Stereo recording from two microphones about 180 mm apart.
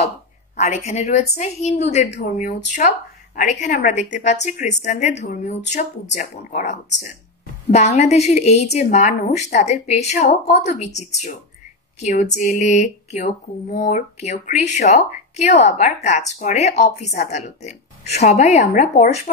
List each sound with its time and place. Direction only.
0.6 s a woman's voice: 40° left (ahead or behind)